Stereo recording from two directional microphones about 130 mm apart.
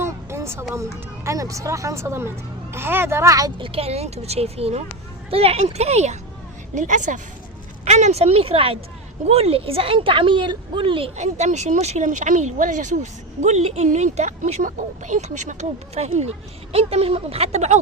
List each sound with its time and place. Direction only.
0.0 s a sound: 20° right (ahead or behind)
0.7 s speech: 25° right (ahead or behind)
3.6 s a woman's voice: 45° right (ahead or behind)
6.7 s a woman's voice: 75° right (ahead or behind)
7.9 s a woman's voice: 60° right (ahead or behind); by 11.1 s 40° right (ahead or behind)
11.2 s speech: 60° right (ahead or behind)
16.0 s a woman's voice: 55° right (ahead or behind)